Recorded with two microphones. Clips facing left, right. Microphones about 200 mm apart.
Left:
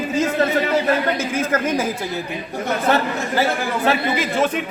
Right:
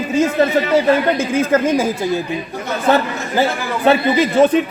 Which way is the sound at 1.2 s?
30° right (ahead or behind).